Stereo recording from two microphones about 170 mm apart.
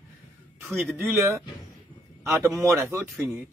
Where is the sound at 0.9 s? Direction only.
15° right (ahead or behind).